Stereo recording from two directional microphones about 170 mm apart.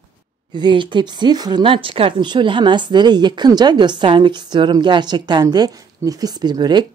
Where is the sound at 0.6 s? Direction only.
25° right (ahead or behind).